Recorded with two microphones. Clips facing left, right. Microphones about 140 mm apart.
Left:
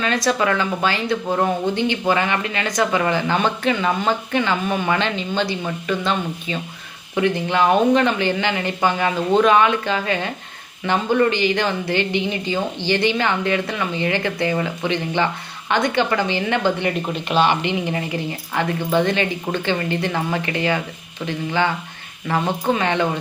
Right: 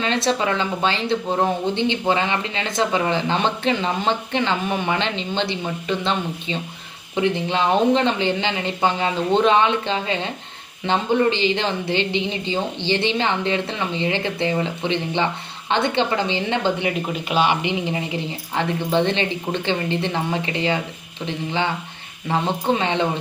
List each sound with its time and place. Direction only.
0.0 s speech: 25° right (ahead or behind)
17.2 s speech: 10° right (ahead or behind)